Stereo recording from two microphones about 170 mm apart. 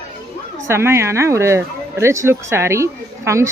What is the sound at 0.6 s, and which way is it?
Speech, 15° right (ahead or behind).